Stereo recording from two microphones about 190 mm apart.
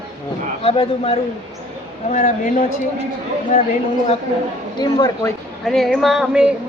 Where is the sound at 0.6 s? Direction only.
30° left (ahead or behind).